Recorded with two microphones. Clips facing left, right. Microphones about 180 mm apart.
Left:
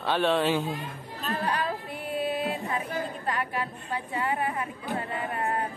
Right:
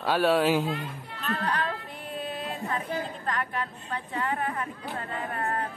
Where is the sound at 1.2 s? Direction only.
15° left (ahead or behind).